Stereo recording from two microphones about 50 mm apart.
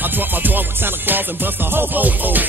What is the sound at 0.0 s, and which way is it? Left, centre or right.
Music, right.